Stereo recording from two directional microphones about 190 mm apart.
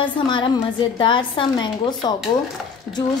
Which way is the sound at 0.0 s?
25° left (ahead or behind).